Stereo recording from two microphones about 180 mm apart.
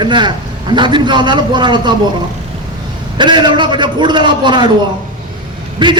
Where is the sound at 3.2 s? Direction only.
25° right (ahead or behind).